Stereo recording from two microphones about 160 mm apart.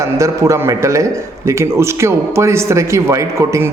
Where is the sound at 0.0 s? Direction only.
20° right (ahead or behind).